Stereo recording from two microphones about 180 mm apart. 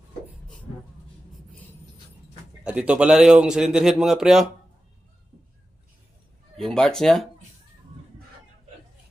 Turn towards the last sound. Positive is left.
turn(degrees=0)  # may be behind; listen again after turning